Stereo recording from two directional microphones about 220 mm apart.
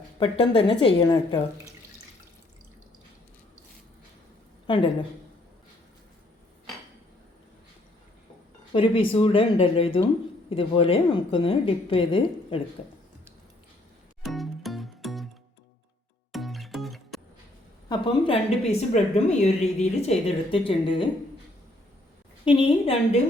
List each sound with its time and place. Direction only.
0.2 s a woman's voice: 25° left (ahead or behind)
4.6 s a woman's voice: 20° left (ahead or behind)
8.7 s a woman's voice: 25° left (ahead or behind)
14.3 s music: centre (ahead or behind)
16.3 s music: centre (ahead or behind)
17.8 s a woman's voice: 20° left (ahead or behind)
22.4 s a woman's voice: 20° left (ahead or behind)